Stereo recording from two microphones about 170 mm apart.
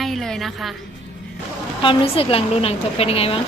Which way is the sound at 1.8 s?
30° left (ahead or behind).